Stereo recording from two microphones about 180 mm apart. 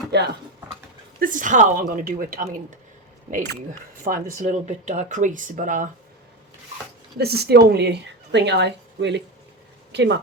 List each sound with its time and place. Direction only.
0.1 s a woman's voice: 65° right (ahead or behind)
1.2 s speech: 45° right (ahead or behind)
7.2 s a woman's voice: 65° right (ahead or behind)